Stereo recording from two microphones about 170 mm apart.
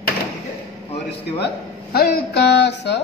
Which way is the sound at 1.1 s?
80° left.